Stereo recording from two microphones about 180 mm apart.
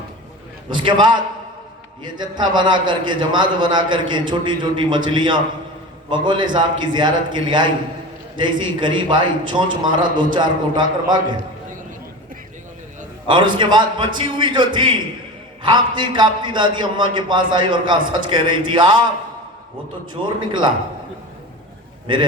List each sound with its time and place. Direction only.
0.7 s a man's voice: 25° right (ahead or behind)
13.2 s a man's voice: 25° right (ahead or behind)
20.2 s a man's voice: 25° right (ahead or behind)